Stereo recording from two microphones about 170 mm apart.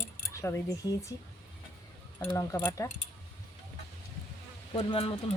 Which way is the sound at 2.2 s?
20° left (ahead or behind).